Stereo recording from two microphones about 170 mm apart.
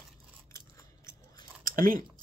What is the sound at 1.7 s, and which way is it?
Speech, 55° right (ahead or behind).